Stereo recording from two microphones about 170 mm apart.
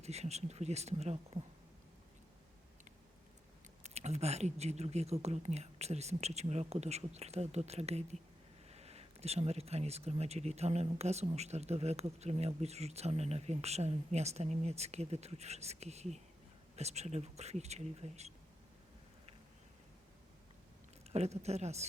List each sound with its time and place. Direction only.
0.0 s speech: 40° right (ahead or behind)
3.8 s speech: 40° right (ahead or behind)
21.1 s speech: 40° right (ahead or behind)